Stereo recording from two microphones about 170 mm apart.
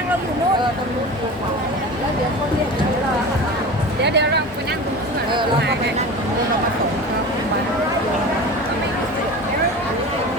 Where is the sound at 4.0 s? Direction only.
85° right.